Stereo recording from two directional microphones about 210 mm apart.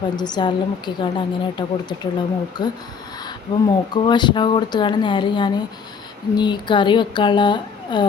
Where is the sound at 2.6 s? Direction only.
20° left (ahead or behind).